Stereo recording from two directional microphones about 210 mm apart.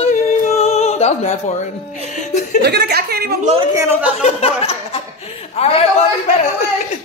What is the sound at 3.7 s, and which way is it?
Speech, 10° right (ahead or behind).